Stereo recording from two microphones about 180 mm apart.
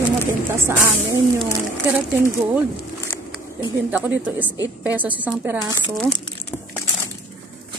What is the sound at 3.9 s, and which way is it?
Speech, 10° right (ahead or behind).